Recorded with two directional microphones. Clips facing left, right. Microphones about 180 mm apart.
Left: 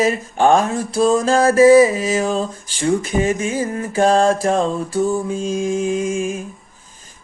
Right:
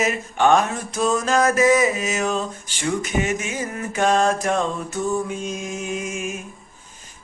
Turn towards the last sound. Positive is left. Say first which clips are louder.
# left 8 dB
turn(degrees=30)  # may be behind; listen again after turning